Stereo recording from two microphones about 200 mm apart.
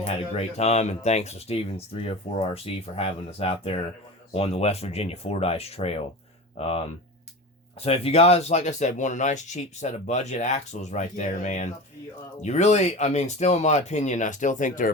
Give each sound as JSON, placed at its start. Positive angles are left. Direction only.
{"t": 0.0, "sound": "speech", "side_deg": 30}
{"t": 7.9, "sound": "speech", "side_deg": 30}